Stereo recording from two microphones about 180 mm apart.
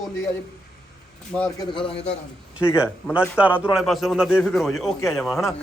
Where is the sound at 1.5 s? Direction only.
30° left (ahead or behind).